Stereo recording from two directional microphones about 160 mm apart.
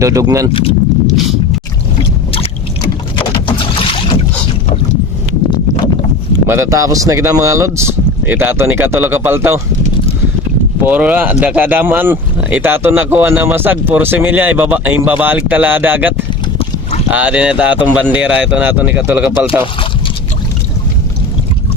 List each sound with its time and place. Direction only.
0.0 s speech: 20° right (ahead or behind)
0.5 s vehicle: 40° left (ahead or behind)
2.3 s boat: 35° left (ahead or behind)
6.5 s speech: 20° right (ahead or behind)
10.8 s speech: 10° right (ahead or behind)